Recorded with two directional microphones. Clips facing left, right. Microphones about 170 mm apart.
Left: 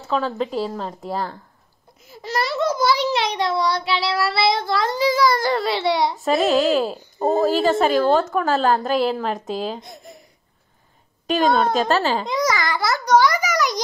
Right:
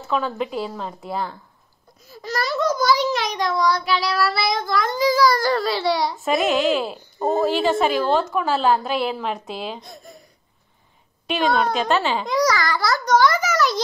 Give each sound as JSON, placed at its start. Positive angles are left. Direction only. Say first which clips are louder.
{"t": 0.1, "sound": "a woman's voice", "louder": "left 1 dB", "side_deg": 35}
{"t": 2.0, "sound": "a child's voice", "louder": "left 1 dB", "side_deg": 25}
{"t": 6.2, "sound": "a woman's voice", "louder": "left 1 dB", "side_deg": 35}
{"t": 9.8, "sound": "a child's voice", "louder": "left 1 dB", "side_deg": 20}
{"t": 11.2, "sound": "a woman's voice", "louder": "left 2 dB", "side_deg": 40}
{"t": 12.3, "sound": "a child's voice", "louder": "right 1 dB", "side_deg": 20}